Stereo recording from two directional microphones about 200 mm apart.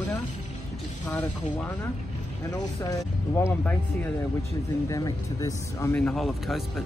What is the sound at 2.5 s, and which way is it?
Speech, 20° left (ahead or behind).